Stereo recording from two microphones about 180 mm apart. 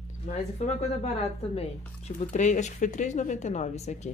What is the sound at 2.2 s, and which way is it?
Speech, 40° left (ahead or behind).